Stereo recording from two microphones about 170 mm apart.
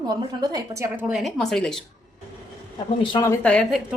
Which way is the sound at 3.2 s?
10° left (ahead or behind).